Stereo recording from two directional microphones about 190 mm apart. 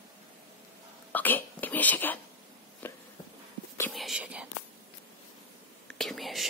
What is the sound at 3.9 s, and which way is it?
Whispering, centre (ahead or behind).